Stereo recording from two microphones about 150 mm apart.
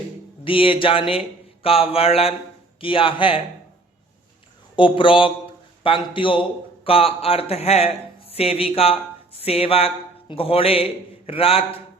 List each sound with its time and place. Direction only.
0.4 s speech: 35° left (ahead or behind)
4.8 s a man's voice: 35° left (ahead or behind)